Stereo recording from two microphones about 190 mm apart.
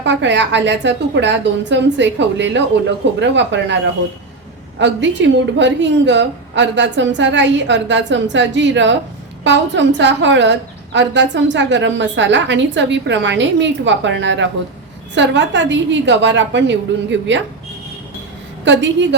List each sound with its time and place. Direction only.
0.0 s a woman's voice: 70° right (ahead or behind)
4.8 s a woman's voice: 70° right (ahead or behind)
18.6 s a woman's voice: 70° right (ahead or behind)